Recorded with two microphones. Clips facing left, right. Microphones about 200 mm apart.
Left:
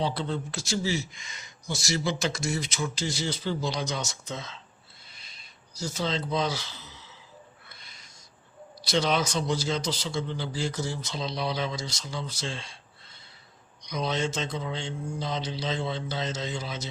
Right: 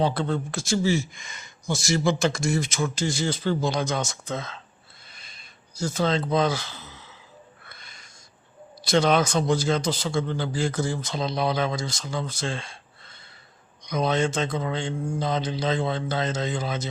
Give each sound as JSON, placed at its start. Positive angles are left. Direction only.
{"t": 0.0, "sound": "speech", "side_deg": -50}
{"t": 5.1, "sound": "a sound", "side_deg": -50}
{"t": 8.8, "sound": "speech", "side_deg": -50}